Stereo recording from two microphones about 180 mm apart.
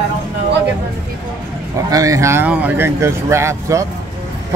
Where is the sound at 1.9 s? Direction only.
20° right (ahead or behind).